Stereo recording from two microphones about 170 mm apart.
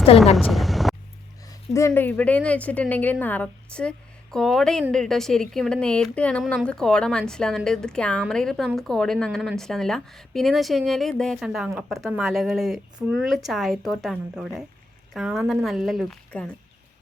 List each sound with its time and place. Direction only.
0.3 s vehicle: centre (ahead or behind)
1.7 s a woman's voice: 15° left (ahead or behind)